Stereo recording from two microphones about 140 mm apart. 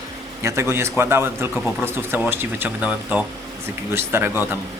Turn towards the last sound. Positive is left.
turn(degrees=-15)  # may be behind; listen again after turning